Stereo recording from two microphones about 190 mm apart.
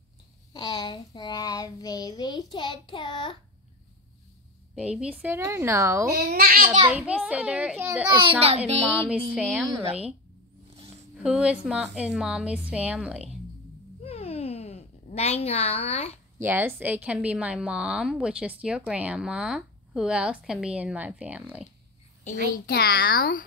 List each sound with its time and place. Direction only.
0.5 s child singing: 20° left (ahead or behind)
4.7 s a woman's voice: 5° right (ahead or behind)
6.1 s a child's voice: 50° right (ahead or behind)
6.9 s a woman's voice: 5° right (ahead or behind)
8.6 s music: 35° right (ahead or behind)
9.3 s a woman's voice: 5° right (ahead or behind)
9.7 s a woman's voice: 25° right (ahead or behind)
11.2 s a woman's voice: 5° right (ahead or behind)
14.0 s a sound: 30° left (ahead or behind)
16.3 s a woman's voice: 10° right (ahead or behind)
22.7 s a woman's voice: 55° left (ahead or behind)